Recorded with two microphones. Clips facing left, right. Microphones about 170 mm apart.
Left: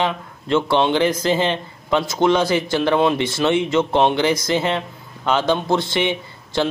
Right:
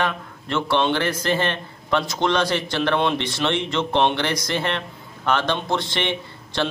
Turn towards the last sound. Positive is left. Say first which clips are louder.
# left 4 dB
turn(degrees=10)  # may be behind; listen again after turning